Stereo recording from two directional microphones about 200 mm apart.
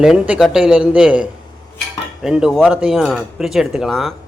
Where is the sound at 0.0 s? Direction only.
5° right (ahead or behind).